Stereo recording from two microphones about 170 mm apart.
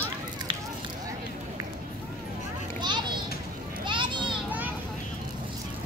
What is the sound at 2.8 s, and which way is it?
Children playing, 25° right (ahead or behind).